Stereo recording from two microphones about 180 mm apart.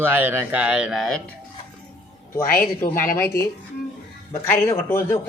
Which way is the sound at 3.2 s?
15° left (ahead or behind).